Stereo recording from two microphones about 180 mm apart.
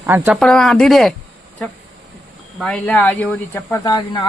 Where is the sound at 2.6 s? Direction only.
5° left (ahead or behind).